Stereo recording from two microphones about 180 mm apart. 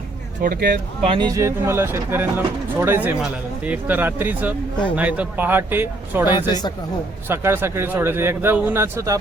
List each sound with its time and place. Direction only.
0.4 s speech: 55° right (ahead or behind)
1.0 s speech: 30° right (ahead or behind)
1.3 s speech: 15° right (ahead or behind)
6.5 s speech: 25° left (ahead or behind)
7.3 s speech: 15° right (ahead or behind)